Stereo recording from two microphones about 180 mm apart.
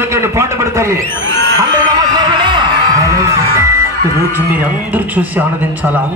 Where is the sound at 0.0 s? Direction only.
15° right (ahead or behind).